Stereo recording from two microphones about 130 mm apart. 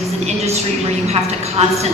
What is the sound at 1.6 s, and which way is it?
Speech, 55° right (ahead or behind).